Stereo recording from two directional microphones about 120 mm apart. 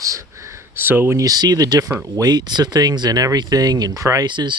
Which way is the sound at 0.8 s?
15° right (ahead or behind).